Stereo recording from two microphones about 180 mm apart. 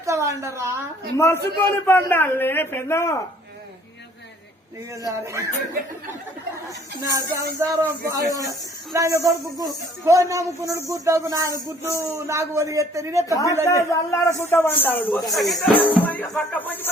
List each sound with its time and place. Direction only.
0.0 s a woman's voice: 15° right (ahead or behind)
1.1 s a man's voice: 15° left (ahead or behind)
5.0 s speech: 15° right (ahead or behind)
7.0 s speech: 20° right (ahead or behind)
13.3 s a man's voice: 20° left (ahead or behind)